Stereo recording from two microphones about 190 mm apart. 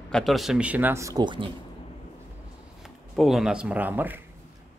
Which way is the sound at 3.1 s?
Centre (ahead or behind).